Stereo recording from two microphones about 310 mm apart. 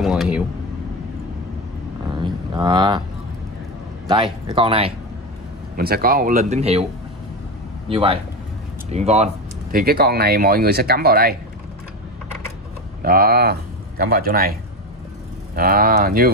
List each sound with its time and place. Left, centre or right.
0.0 s speech: centre
2.0 s cattle: centre
4.1 s speech: centre
5.8 s speech: right
7.9 s speech: centre
13.0 s speech: right
15.5 s speech: right